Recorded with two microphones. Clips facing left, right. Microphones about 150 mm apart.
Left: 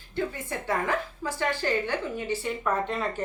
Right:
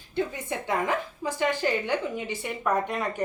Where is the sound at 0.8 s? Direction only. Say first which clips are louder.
Right 1 dB; 15° right (ahead or behind).